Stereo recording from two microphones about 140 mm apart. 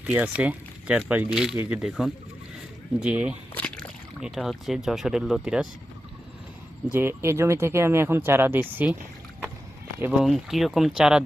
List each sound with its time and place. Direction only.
0.0 s speech: 10° right (ahead or behind)
3.5 s slosh: 10° left (ahead or behind)
4.2 s speech: centre (ahead or behind)
6.9 s speech: 15° right (ahead or behind)
10.2 s speech: centre (ahead or behind)